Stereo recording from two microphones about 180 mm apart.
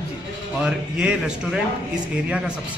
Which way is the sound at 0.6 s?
5° right (ahead or behind).